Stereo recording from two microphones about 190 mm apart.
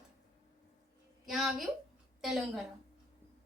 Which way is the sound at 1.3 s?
Centre (ahead or behind).